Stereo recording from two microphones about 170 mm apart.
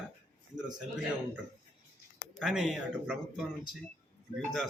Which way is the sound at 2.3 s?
Centre (ahead or behind).